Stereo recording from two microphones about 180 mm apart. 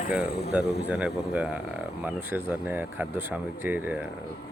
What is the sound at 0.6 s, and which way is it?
Speech, 65° left (ahead or behind).